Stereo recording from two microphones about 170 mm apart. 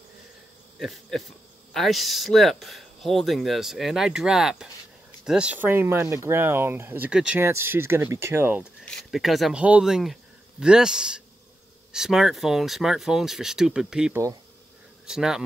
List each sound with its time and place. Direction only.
0.7 s speech: centre (ahead or behind)
8.8 s speech: centre (ahead or behind)